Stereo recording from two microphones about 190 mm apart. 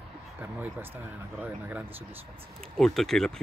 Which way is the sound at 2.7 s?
Centre (ahead or behind).